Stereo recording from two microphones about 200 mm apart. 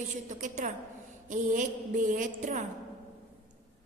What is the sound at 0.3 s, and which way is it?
A woman's voice, 40° right (ahead or behind).